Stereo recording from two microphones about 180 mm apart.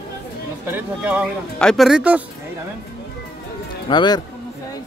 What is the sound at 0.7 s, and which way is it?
Speech, 10° right (ahead or behind).